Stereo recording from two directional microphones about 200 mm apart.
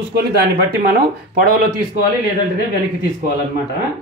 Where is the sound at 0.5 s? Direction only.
50° right (ahead or behind).